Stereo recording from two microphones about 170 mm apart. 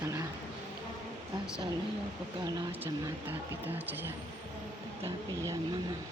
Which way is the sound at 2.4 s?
20° right (ahead or behind).